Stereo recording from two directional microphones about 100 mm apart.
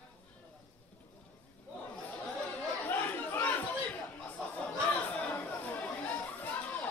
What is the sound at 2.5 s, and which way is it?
Chatter, 20° left (ahead or behind).